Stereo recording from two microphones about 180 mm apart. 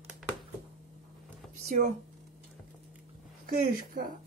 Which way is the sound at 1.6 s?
45° right (ahead or behind).